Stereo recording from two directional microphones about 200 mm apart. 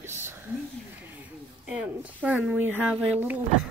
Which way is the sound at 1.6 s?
5° right (ahead or behind).